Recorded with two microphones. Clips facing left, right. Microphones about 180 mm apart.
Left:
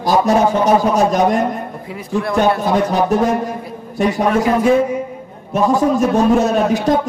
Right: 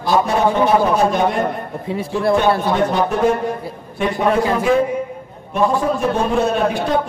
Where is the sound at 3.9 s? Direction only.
40° left (ahead or behind).